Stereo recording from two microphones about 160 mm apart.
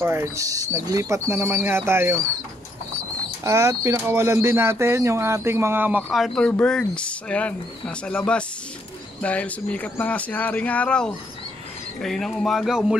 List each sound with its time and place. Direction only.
0.0 s speech: 15° right (ahead or behind)
3.4 s speech: 20° right (ahead or behind)
6.1 s speech: centre (ahead or behind)